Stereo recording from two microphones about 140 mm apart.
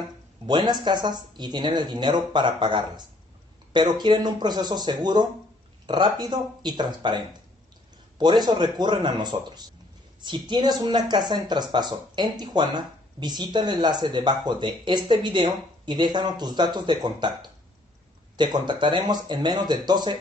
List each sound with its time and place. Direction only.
0.5 s speech: 30° right (ahead or behind)